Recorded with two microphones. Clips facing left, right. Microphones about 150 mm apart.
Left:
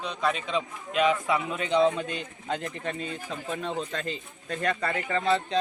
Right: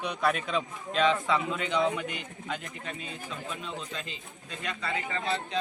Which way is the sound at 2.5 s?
40° left (ahead or behind).